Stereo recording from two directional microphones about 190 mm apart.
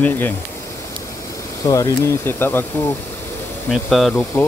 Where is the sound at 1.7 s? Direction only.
15° left (ahead or behind).